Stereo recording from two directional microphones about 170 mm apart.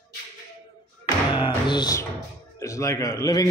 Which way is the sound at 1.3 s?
25° left (ahead or behind).